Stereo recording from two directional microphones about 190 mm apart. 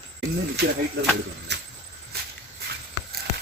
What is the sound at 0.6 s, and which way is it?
Speech, 60° right (ahead or behind).